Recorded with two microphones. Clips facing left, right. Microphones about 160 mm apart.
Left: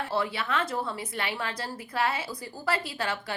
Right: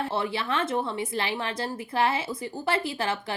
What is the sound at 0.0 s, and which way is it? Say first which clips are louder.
A woman's voice: right 1 dB; 25° right (ahead or behind).